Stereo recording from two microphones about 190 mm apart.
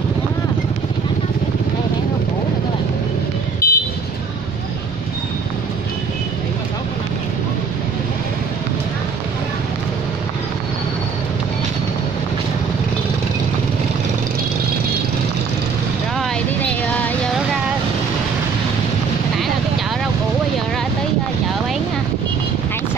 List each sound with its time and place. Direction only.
3.6 s vehicle: 50° left (ahead or behind)
16.2 s vehicle: 5° left (ahead or behind)